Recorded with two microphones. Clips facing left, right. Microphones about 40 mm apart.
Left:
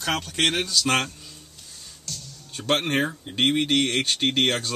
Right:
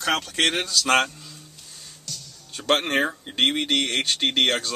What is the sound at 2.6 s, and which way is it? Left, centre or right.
Speech, centre.